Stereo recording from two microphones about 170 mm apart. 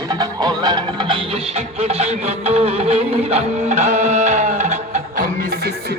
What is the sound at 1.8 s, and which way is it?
Music, 35° right (ahead or behind).